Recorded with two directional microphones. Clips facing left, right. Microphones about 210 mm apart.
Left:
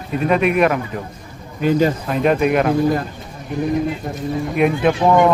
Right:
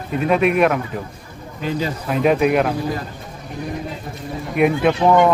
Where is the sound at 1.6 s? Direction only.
55° left (ahead or behind).